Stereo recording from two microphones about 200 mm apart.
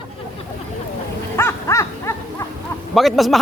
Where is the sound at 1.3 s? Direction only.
15° left (ahead or behind).